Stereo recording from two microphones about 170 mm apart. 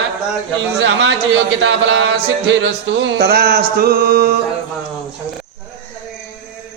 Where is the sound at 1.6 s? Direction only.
90° right.